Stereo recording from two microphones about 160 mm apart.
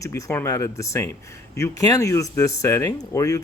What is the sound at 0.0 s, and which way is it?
Speech, 20° left (ahead or behind).